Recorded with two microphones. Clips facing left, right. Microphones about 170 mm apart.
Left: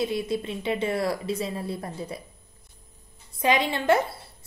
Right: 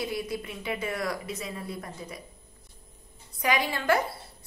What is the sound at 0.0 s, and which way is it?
A woman's voice, 25° left (ahead or behind).